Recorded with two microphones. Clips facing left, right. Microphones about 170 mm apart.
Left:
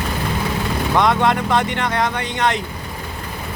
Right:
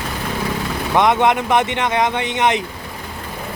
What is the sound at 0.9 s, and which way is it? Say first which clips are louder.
Speech: right 2 dB; 20° right (ahead or behind).